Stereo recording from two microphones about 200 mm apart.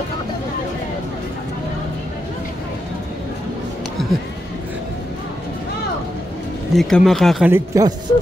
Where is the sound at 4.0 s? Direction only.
Centre (ahead or behind).